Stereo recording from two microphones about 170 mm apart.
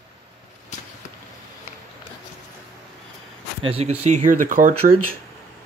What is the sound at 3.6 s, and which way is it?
Speech, 35° right (ahead or behind).